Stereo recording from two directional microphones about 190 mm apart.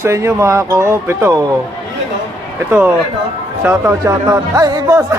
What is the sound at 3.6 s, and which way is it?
Speech, 15° right (ahead or behind).